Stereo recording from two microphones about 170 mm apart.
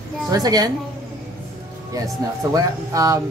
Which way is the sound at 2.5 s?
20° right (ahead or behind).